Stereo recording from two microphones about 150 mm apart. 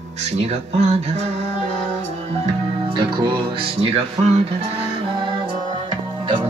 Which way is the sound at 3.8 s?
45° right (ahead or behind).